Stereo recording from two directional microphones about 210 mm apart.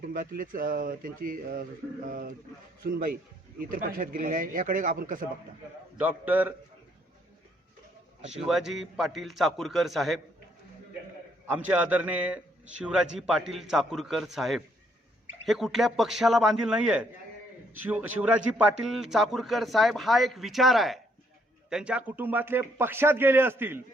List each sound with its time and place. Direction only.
0.0 s speech: 40° right (ahead or behind)
6.0 s a man's voice: 10° right (ahead or behind)
8.4 s a man's voice: centre (ahead or behind)
11.5 s a man's voice: 5° right (ahead or behind)